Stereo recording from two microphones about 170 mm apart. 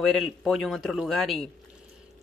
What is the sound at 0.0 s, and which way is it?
Speech, centre (ahead or behind).